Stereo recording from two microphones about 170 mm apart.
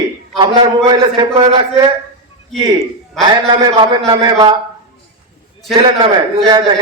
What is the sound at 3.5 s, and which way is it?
A man's voice, 30° right (ahead or behind).